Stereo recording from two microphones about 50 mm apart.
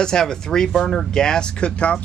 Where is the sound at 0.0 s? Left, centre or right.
Centre.